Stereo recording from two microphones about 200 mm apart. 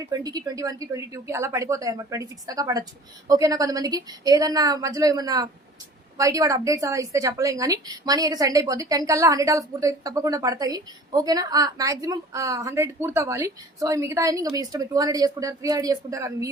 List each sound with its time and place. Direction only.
0.0 s a woman's voice: 20° right (ahead or behind)